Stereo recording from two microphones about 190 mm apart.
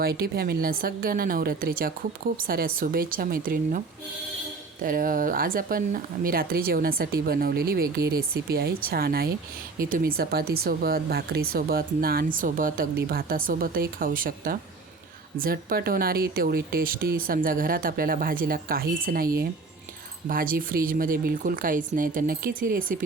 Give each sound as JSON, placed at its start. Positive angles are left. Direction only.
{"t": 0.0, "sound": "speech", "side_deg": -55}
{"t": 4.8, "sound": "speech", "side_deg": -50}